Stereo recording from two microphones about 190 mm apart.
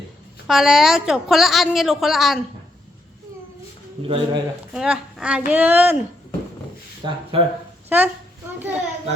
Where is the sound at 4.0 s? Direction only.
30° right (ahead or behind).